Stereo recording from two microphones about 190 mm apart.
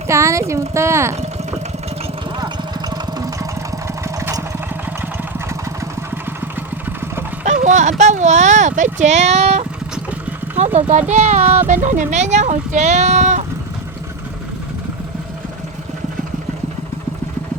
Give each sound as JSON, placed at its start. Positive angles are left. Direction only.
{"t": 0.1, "sound": "speech", "side_deg": -15}
{"t": 2.9, "sound": "engine", "side_deg": -20}
{"t": 6.1, "sound": "vehicle", "side_deg": -10}
{"t": 7.4, "sound": "speech", "side_deg": -40}
{"t": 9.9, "sound": "vehicle", "side_deg": -10}
{"t": 10.8, "sound": "speech", "side_deg": -40}